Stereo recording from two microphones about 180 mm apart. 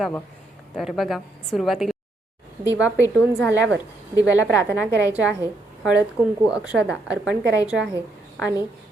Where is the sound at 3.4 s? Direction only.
15° left (ahead or behind).